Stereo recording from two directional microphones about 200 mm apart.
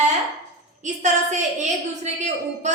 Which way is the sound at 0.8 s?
35° right (ahead or behind).